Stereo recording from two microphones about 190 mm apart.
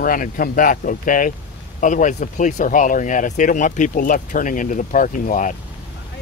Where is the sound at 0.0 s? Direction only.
45° left (ahead or behind).